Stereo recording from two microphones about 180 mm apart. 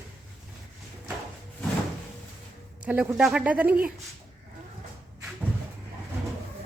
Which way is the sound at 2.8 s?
10° right (ahead or behind).